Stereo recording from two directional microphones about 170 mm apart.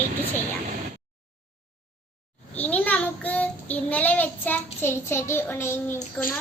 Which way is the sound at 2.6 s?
10° left (ahead or behind).